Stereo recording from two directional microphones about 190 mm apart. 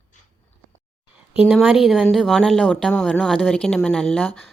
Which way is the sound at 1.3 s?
5° right (ahead or behind).